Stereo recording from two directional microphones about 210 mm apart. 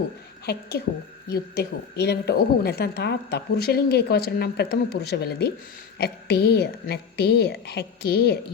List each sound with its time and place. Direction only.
0.7 s a woman's voice: 50° left (ahead or behind)